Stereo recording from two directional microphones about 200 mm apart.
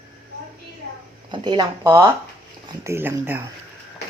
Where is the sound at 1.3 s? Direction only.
25° right (ahead or behind).